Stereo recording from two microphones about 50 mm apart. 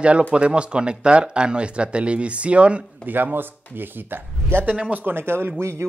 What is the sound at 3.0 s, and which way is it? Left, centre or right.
Speech, right.